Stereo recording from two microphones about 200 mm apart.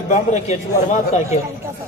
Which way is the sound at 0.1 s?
35° left (ahead or behind).